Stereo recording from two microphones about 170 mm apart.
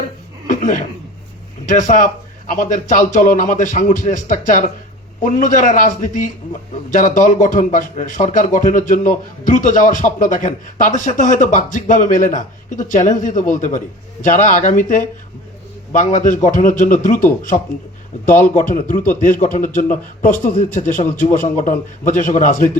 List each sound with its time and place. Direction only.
0.4 s chuckle: 50° left (ahead or behind)
1.6 s a man's voice: 50° left (ahead or behind)
18.3 s a man's voice: 50° left (ahead or behind)